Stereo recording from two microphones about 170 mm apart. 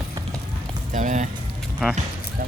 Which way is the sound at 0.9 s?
45° right (ahead or behind).